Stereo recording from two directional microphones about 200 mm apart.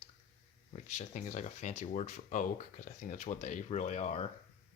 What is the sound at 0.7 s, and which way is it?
Speech, 35° left (ahead or behind).